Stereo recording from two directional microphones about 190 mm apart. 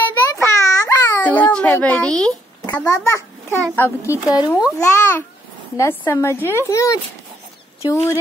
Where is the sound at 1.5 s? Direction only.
10° left (ahead or behind).